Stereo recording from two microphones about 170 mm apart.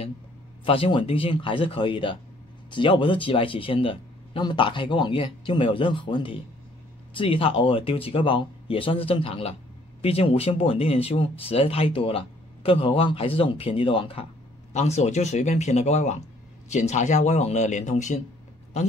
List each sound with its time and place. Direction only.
0.7 s speech: 30° left (ahead or behind)